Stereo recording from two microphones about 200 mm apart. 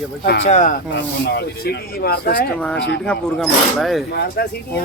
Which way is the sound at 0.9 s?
60° left (ahead or behind).